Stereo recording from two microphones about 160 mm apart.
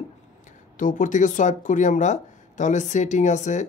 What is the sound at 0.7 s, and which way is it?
Speech, 55° left (ahead or behind).